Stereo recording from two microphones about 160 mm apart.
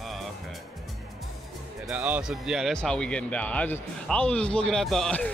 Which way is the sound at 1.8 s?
10° right (ahead or behind).